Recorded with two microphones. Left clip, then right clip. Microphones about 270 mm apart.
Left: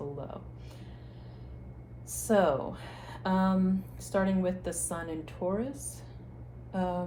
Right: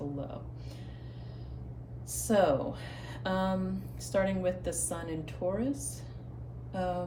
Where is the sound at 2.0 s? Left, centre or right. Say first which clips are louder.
Left 1 dB; centre.